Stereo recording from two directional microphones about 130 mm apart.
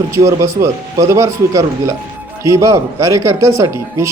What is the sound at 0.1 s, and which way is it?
A man's voice, 25° right (ahead or behind).